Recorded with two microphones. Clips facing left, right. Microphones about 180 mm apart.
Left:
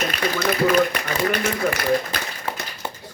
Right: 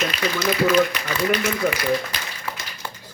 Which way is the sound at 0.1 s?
50° left (ahead or behind).